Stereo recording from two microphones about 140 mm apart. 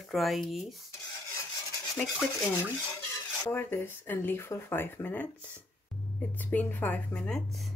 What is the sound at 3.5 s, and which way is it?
Speech, 15° left (ahead or behind).